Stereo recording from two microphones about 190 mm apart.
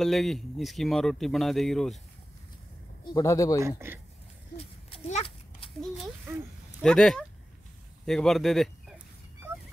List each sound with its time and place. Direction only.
0.0 s speech: centre (ahead or behind)
3.1 s speech: 20° left (ahead or behind)
3.6 s speech: 10° right (ahead or behind)
4.6 s a sound: 35° left (ahead or behind)
6.3 s speech: 10° right (ahead or behind)
6.8 s speech: 5° left (ahead or behind)